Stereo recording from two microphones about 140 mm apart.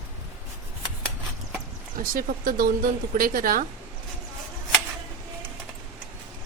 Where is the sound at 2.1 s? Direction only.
85° right.